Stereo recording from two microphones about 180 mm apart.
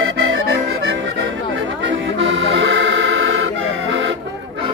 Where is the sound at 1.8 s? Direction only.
90° right.